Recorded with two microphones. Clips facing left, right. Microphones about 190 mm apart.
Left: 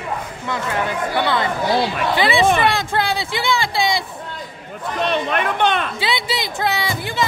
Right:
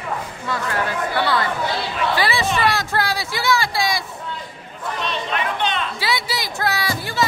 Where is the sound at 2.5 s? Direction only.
55° left (ahead or behind).